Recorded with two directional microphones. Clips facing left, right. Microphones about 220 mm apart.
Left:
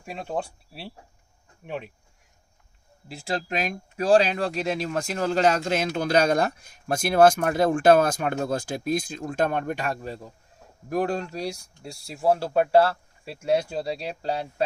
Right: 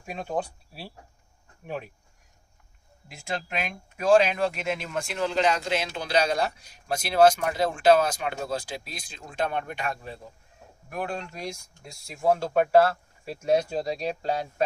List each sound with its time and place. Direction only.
0.1 s speech: 25° left (ahead or behind)
3.1 s speech: 35° left (ahead or behind)